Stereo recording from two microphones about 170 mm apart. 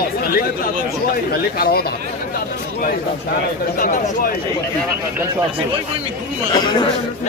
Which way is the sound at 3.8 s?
55° left (ahead or behind).